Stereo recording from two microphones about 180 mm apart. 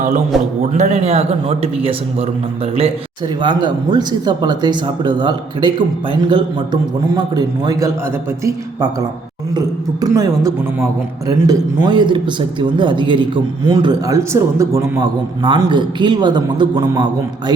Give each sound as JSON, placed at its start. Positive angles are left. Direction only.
{"t": 0.7, "sound": "a man's voice", "side_deg": -40}
{"t": 3.4, "sound": "speech", "side_deg": -25}
{"t": 7.1, "sound": "speech", "side_deg": -20}
{"t": 9.6, "sound": "speech", "side_deg": -20}